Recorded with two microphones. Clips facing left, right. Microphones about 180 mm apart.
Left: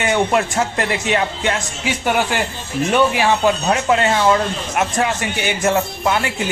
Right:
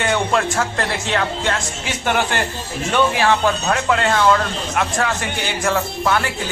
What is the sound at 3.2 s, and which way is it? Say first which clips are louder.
A man's voice: left 1 dB; 15° left (ahead or behind).